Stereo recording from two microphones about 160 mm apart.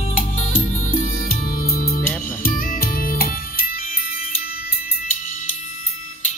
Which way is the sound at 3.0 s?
65° left (ahead or behind).